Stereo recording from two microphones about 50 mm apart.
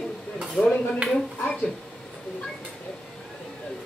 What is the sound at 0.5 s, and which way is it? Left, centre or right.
Stir, centre.